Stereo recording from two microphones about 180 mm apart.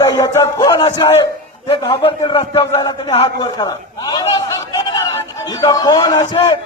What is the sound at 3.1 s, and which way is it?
Chatter, 25° left (ahead or behind).